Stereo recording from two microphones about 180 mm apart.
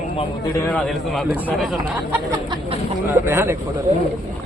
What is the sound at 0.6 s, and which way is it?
Speech, 5° left (ahead or behind).